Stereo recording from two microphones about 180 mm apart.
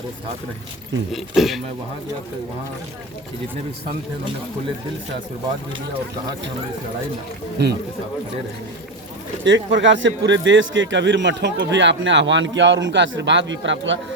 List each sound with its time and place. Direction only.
1.1 s speech: centre (ahead or behind)
7.6 s speech: 70° right (ahead or behind)
9.4 s a man's voice: 80° right